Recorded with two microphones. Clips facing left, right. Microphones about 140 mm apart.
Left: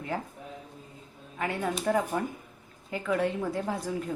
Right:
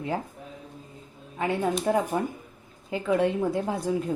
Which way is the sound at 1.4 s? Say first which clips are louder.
Right 5 dB; 25° right (ahead or behind).